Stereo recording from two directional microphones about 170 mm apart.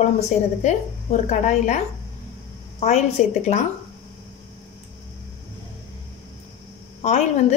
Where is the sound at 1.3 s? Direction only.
45° left (ahead or behind).